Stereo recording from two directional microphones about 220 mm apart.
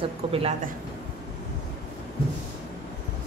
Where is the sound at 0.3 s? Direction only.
25° right (ahead or behind).